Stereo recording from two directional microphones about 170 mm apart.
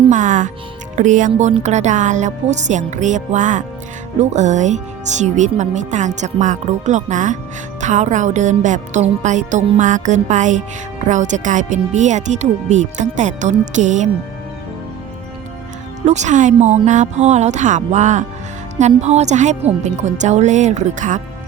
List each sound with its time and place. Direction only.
0.1 s speech: 45° right (ahead or behind)
16.0 s speech: 45° right (ahead or behind)